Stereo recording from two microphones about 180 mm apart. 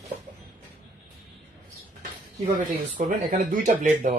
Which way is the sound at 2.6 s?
50° right (ahead or behind).